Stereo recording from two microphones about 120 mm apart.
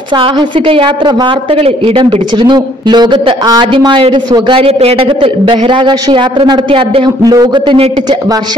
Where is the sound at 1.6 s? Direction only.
50° right (ahead or behind).